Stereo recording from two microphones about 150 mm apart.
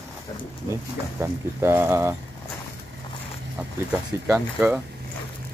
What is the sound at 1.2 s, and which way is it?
Speech, 15° right (ahead or behind).